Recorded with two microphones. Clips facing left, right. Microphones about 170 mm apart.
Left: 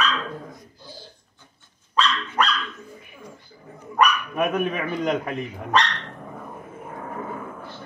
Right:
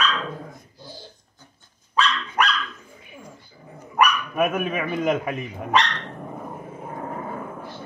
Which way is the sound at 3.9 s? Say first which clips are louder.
Even; 5° right (ahead or behind).